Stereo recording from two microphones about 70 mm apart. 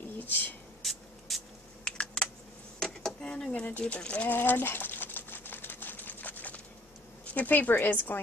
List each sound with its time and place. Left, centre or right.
0.2 s speech: left
0.8 s spray: centre
1.3 s a sound: centre
1.9 s computer keyboard: centre
2.8 s drawer open or close: centre
3.6 s pigeon: left
7.3 s a woman's voice: left